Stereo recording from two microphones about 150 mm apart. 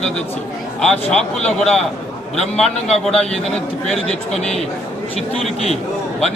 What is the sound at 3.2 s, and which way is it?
Speech, 45° left (ahead or behind).